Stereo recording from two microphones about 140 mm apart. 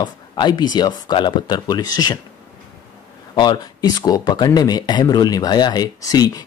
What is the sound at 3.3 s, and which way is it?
Speech, 30° left (ahead or behind).